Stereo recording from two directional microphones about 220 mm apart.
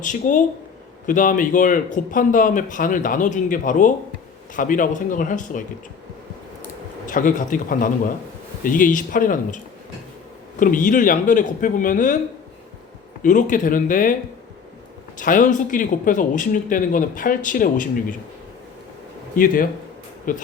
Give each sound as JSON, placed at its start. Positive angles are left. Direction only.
{"t": 0.0, "sound": "a man's voice", "side_deg": 35}
{"t": 7.1, "sound": "a man's voice", "side_deg": 35}
{"t": 10.6, "sound": "a man's voice", "side_deg": 35}
{"t": 13.2, "sound": "a man's voice", "side_deg": 35}
{"t": 15.2, "sound": "a man's voice", "side_deg": 35}
{"t": 20.3, "sound": "a man's voice", "side_deg": 40}